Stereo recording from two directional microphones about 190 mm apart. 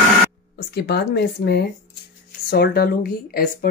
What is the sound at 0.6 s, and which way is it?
Speech, 55° left (ahead or behind).